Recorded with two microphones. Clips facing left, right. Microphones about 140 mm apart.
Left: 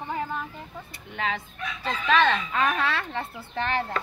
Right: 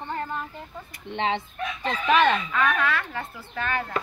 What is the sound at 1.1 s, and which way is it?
Speech, 25° right (ahead or behind).